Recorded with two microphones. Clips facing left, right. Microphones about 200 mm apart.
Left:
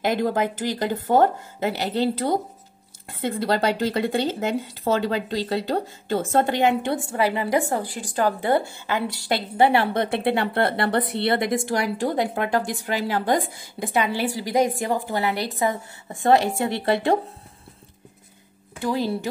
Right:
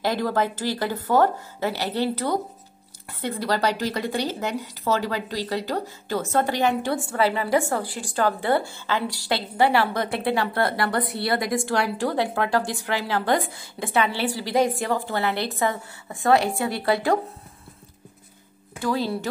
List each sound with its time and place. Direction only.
0.0 s speech: 20° left (ahead or behind)
18.8 s speech: 15° left (ahead or behind)